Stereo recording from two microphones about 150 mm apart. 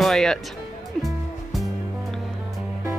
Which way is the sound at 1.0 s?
Centre (ahead or behind).